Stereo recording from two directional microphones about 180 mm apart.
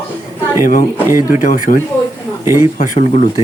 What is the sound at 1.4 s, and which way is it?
Speech, 45° left (ahead or behind).